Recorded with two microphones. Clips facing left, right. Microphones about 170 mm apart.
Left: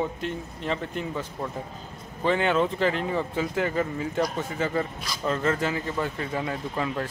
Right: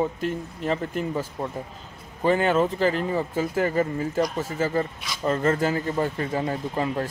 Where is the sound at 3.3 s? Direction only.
45° right (ahead or behind).